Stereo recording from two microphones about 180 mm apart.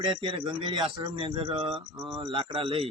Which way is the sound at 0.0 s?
25° right (ahead or behind).